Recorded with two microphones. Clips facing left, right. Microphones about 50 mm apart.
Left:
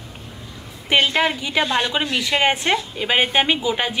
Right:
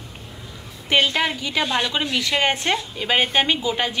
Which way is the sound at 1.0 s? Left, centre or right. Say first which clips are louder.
Left 2 dB; left.